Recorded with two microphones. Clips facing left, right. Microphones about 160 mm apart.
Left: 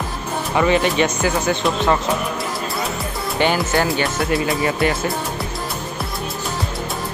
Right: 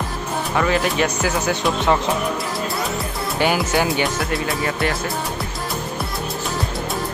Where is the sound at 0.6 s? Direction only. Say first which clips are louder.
Left 3 dB; centre (ahead or behind).